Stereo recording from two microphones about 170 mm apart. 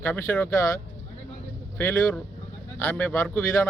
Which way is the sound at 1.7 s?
15° left (ahead or behind).